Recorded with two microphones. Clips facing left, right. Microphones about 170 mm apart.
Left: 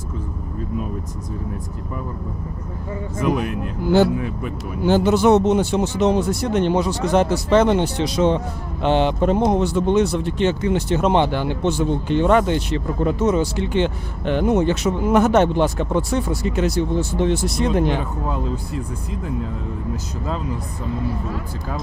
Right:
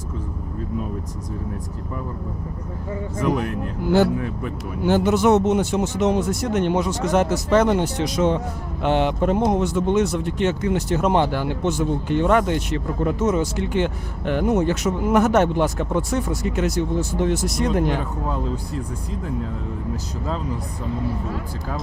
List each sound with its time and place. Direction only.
3.2 s speech: 15° left (ahead or behind)
3.8 s speech: 30° left (ahead or behind)